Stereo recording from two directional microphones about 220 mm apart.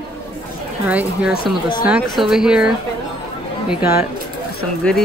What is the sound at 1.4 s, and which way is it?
Speech, 20° left (ahead or behind).